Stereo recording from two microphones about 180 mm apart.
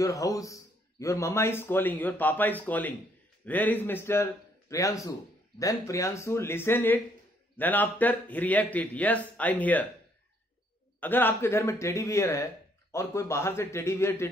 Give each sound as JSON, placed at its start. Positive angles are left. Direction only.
{"t": 0.0, "sound": "a man's voice", "side_deg": 20}
{"t": 11.0, "sound": "a man's voice", "side_deg": 10}